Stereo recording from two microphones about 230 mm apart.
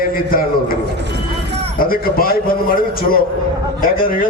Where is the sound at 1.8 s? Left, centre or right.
Left.